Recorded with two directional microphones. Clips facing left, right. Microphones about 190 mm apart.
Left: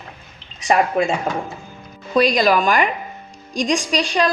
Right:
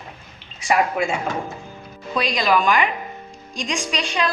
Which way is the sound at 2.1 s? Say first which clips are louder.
Left 5 dB; 45° left (ahead or behind).